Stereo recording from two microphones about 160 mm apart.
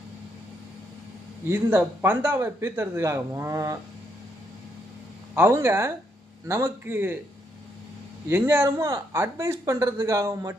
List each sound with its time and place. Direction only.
1.5 s speech: 15° right (ahead or behind)
5.3 s speech: 15° right (ahead or behind)
8.3 s speech: 10° right (ahead or behind)